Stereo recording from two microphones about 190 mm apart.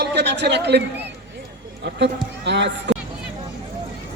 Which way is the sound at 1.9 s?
65° right (ahead or behind).